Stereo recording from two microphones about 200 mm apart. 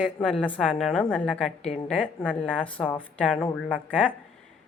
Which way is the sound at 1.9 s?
5° left (ahead or behind).